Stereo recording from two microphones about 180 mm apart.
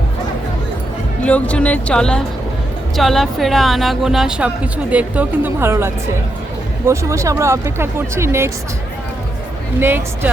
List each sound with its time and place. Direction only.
1.2 s speech: 5° left (ahead or behind); by 8.4 s 15° right (ahead or behind)